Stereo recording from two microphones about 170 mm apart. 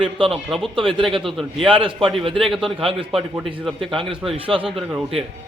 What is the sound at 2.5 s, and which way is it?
Speech, centre (ahead or behind).